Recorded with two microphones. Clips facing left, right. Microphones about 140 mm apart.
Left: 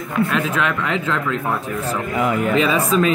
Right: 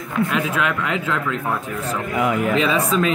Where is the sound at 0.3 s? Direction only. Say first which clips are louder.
Left 1 dB; 10° right (ahead or behind).